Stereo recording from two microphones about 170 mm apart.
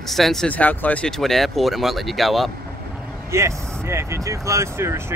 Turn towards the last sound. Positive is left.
turn(degrees=-15)  # may be behind; listen again after turning